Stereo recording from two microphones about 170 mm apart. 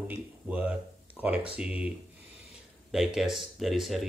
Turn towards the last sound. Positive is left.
turn(degrees=0)  # may be behind; listen again after turning